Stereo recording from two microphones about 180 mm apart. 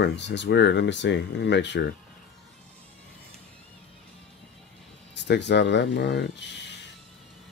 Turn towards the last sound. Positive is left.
turn(degrees=75)  # may be behind; listen again after turning